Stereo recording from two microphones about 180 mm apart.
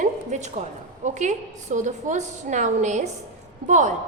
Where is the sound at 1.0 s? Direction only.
40° right (ahead or behind).